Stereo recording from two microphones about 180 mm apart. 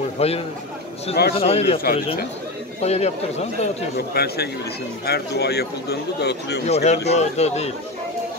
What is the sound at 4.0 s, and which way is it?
Speech, 60° left (ahead or behind).